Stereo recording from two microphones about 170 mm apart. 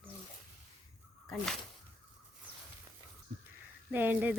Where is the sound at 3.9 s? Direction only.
10° right (ahead or behind).